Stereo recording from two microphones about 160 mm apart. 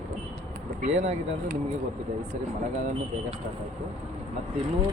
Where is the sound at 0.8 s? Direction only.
55° right (ahead or behind).